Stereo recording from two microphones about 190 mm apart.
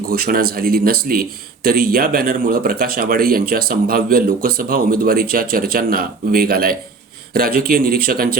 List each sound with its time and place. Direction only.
0.1 s speech: 50° right (ahead or behind)